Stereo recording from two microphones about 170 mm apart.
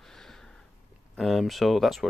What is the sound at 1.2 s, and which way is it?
Speech, centre (ahead or behind).